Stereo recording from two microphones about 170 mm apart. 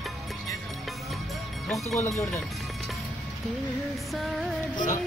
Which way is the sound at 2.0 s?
15° left (ahead or behind).